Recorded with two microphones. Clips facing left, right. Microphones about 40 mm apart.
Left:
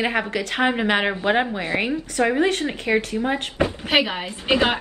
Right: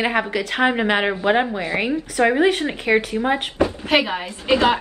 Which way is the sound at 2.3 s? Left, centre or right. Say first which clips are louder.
Right 3 dB; centre.